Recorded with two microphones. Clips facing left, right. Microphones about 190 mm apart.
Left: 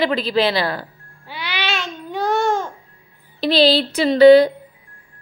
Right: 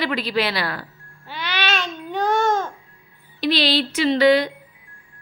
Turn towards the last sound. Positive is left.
turn(degrees=35)  # may be behind; listen again after turning